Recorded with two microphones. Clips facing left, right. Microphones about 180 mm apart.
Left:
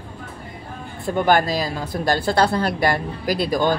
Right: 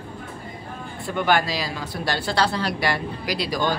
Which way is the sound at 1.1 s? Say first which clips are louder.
Left 4 dB; 45° left (ahead or behind).